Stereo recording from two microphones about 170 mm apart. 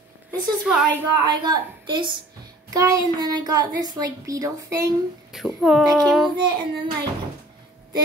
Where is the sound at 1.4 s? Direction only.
25° right (ahead or behind).